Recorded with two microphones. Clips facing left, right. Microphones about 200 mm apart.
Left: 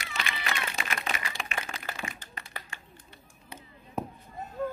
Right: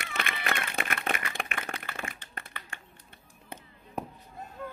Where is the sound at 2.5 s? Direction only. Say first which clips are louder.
Left 3 dB; 40° left (ahead or behind).